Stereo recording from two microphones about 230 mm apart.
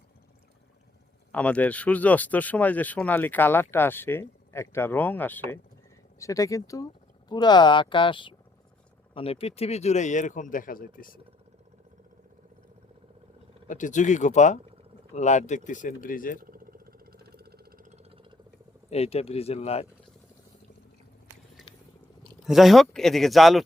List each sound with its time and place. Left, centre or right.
1.3 s speech: centre; by 11.2 s left
13.7 s speech: left
16.4 s a sound: right
18.9 s speech: left
22.4 s speech: centre